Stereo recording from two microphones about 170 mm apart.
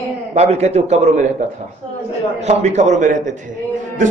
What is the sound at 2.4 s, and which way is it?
Speech, 40° right (ahead or behind).